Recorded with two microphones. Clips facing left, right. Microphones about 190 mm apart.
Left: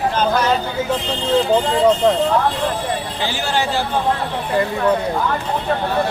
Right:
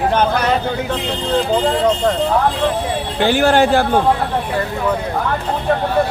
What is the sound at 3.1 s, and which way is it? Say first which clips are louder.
Speech: right 13 dB; 60° right (ahead or behind).